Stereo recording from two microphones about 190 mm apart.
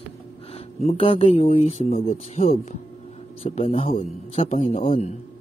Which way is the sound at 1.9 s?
50° left (ahead or behind).